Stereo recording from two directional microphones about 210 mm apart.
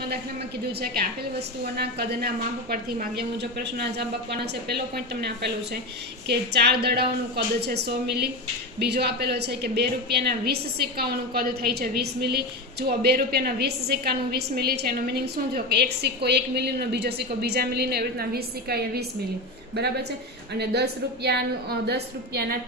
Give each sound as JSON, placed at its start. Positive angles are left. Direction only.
{"t": 0.7, "sound": "a woman's voice", "side_deg": -50}